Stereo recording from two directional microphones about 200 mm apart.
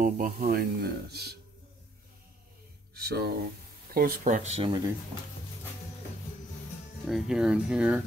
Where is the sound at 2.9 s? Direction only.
50° right (ahead or behind).